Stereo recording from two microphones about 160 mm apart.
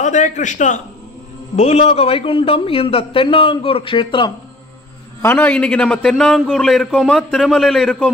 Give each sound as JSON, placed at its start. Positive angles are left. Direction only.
{"t": 0.0, "sound": "a man's voice", "side_deg": 50}
{"t": 5.2, "sound": "a man's voice", "side_deg": 10}